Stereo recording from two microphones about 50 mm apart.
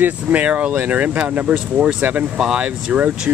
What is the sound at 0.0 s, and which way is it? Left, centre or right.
Speech, right.